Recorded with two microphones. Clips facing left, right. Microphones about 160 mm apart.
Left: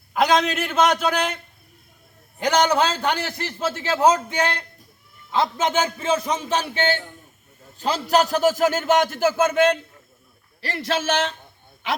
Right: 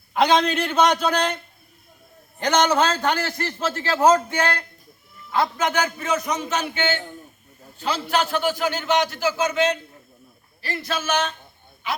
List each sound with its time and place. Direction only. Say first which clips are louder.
0.1 s a man's voice: right 1 dB; centre (ahead or behind)
2.4 s a man's voice: even; 10° left (ahead or behind); by 9.7 s 50° left (ahead or behind)
10.6 s a man's voice: left 3 dB; 75° left (ahead or behind)